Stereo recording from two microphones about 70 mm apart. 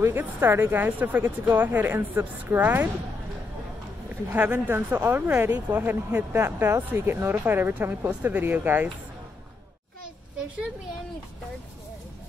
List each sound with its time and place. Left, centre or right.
0.0 s speech: right
4.3 s speech: right